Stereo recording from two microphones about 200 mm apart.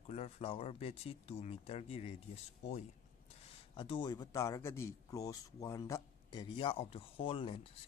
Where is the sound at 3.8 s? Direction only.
25° left (ahead or behind).